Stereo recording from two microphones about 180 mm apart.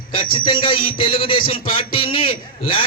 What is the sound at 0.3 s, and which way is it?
Speech, 30° left (ahead or behind).